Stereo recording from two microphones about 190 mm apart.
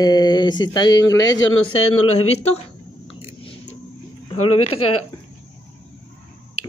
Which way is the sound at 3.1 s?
30° left (ahead or behind).